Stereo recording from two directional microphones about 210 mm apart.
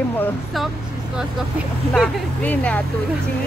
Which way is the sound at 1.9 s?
5° left (ahead or behind).